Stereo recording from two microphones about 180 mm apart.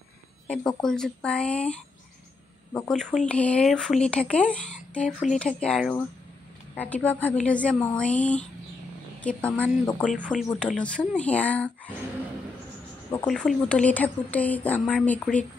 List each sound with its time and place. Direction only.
0.5 s speech: 5° left (ahead or behind)
13.1 s speech: 5° left (ahead or behind)